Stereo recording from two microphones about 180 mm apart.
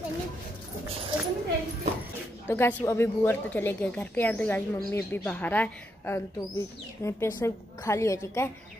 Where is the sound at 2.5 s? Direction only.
15° left (ahead or behind).